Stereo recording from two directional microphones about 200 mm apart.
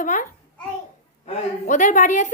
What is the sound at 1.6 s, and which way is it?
Speech, 40° left (ahead or behind).